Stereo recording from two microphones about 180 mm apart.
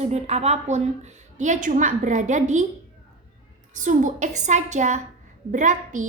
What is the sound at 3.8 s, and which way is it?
A woman's voice, 45° right (ahead or behind).